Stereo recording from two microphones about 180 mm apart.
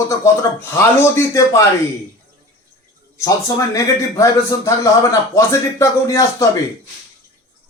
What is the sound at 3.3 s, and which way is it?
A man's voice, 20° left (ahead or behind).